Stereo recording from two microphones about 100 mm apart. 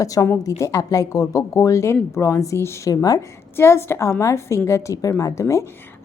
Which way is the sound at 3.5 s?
25° left (ahead or behind).